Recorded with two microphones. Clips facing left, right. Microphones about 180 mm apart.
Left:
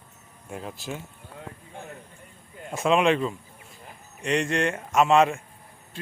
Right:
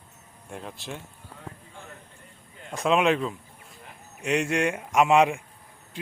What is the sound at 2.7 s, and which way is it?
Speech, centre (ahead or behind).